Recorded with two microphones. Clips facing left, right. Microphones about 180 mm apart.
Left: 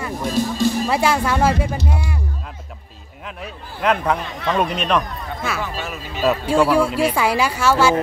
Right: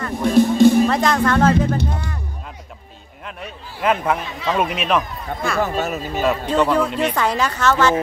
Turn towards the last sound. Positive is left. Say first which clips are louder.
# left 1 dB
turn(degrees=10)  # may be behind; listen again after turning